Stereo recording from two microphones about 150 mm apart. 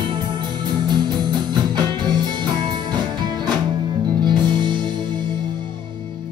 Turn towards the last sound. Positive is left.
turn(degrees=-30)  # may be behind; listen again after turning